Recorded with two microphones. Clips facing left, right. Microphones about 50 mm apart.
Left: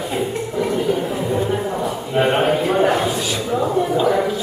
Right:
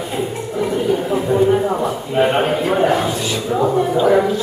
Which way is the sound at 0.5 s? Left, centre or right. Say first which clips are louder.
Right 1 dB; centre.